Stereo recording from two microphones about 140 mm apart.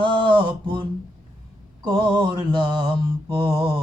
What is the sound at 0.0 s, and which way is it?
Mantra, 35° right (ahead or behind).